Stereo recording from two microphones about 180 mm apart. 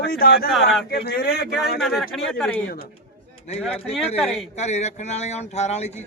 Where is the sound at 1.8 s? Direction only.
Centre (ahead or behind).